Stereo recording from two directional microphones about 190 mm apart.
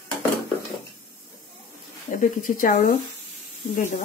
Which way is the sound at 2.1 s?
45° left (ahead or behind).